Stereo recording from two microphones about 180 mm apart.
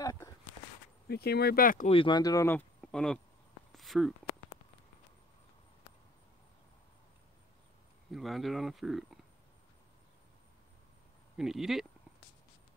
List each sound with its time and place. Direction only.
0.0 s walk: 20° left (ahead or behind)
1.0 s speech: 65° left (ahead or behind)
1.9 s speech: 30° left (ahead or behind)
2.8 s a sound: 5° left (ahead or behind)
8.1 s speech: centre (ahead or behind)
11.3 s speech: centre (ahead or behind)